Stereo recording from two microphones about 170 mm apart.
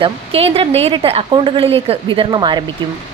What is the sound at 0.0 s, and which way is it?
A woman's voice, 35° right (ahead or behind).